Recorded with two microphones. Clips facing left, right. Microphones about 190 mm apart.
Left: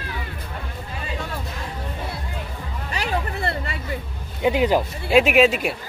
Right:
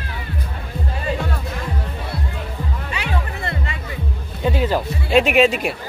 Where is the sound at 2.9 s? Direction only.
35° left (ahead or behind).